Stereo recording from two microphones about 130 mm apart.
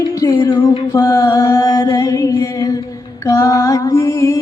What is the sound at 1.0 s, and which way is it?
Music, 25° left (ahead or behind).